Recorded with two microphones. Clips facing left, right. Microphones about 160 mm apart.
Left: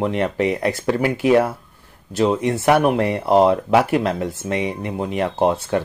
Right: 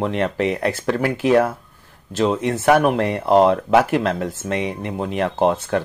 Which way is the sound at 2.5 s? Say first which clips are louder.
Right 2 dB; 5° left (ahead or behind).